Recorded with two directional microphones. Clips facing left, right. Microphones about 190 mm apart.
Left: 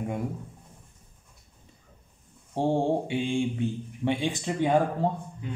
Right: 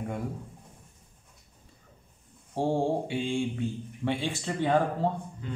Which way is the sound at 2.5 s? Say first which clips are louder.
Left 2 dB; 20° left (ahead or behind).